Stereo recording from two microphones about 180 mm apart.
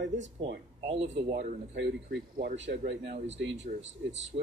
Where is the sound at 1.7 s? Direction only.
75° right (ahead or behind).